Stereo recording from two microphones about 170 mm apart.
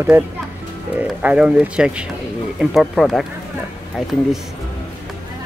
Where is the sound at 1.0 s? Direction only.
5° right (ahead or behind).